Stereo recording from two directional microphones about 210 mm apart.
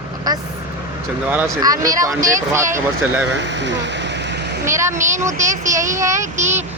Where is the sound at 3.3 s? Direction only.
55° right (ahead or behind).